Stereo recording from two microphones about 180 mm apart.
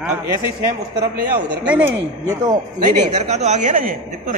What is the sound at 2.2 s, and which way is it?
Speech, 20° right (ahead or behind).